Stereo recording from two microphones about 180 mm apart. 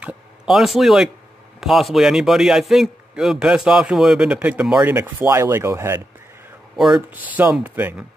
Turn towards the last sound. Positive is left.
turn(degrees=-10)  # may be behind; listen again after turning